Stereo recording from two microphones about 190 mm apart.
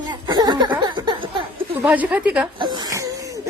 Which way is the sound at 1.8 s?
10° right (ahead or behind).